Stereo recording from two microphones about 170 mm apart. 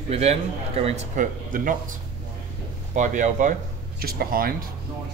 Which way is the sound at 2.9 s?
45° right (ahead or behind).